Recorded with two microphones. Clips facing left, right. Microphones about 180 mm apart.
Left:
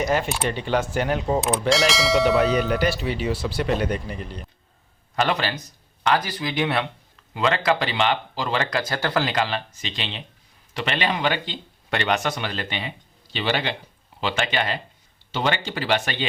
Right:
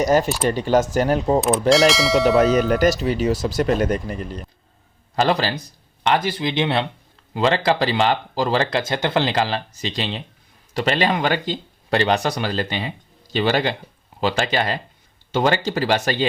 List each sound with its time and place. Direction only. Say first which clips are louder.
0.0 s speech: right 5 dB; 40° right (ahead or behind)
1.7 s speech: right 4 dB; centre (ahead or behind)
2.6 s speech: right 5 dB; 45° right (ahead or behind)
5.1 s speech: right 4 dB; 35° right (ahead or behind)